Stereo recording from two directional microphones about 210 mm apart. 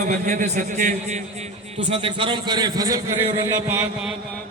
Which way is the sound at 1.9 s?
25° right (ahead or behind).